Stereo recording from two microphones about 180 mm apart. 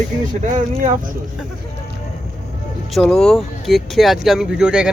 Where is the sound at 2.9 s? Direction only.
5° left (ahead or behind).